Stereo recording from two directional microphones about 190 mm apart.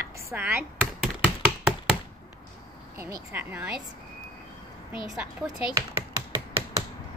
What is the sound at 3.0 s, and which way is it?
Speech, 10° right (ahead or behind).